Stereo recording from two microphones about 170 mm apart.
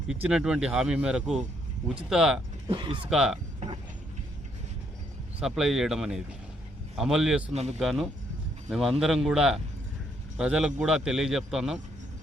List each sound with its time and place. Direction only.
0.1 s a man's voice: 5° right (ahead or behind)
2.6 s speech: 30° right (ahead or behind)
3.1 s a man's voice: 5° right (ahead or behind)
5.4 s a man's voice: 5° right (ahead or behind)